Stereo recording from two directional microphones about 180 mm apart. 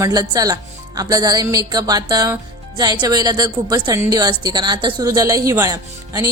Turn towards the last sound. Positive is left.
turn(degrees=-20)  # may be behind; listen again after turning